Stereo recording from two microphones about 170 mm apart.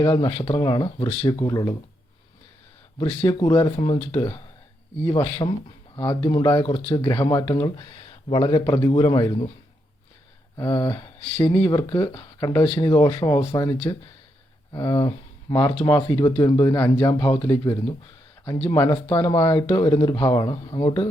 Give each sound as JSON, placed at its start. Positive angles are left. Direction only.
{"t": 0.0, "sound": "speech", "side_deg": 25}
{"t": 3.2, "sound": "speech", "side_deg": 20}
{"t": 10.6, "sound": "speech", "side_deg": 20}